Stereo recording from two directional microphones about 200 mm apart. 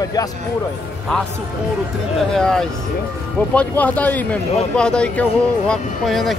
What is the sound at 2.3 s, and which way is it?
Speech, 5° left (ahead or behind).